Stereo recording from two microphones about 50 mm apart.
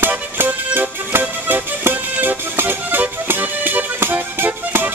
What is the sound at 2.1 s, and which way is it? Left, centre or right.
Music, right.